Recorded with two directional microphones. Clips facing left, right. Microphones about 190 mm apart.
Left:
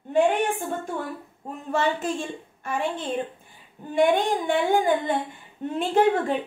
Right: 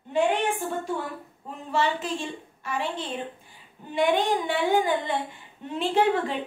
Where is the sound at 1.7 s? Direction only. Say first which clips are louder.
Left 2 dB; 50° left (ahead or behind).